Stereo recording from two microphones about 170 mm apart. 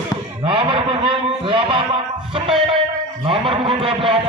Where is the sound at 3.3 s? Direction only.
30° right (ahead or behind).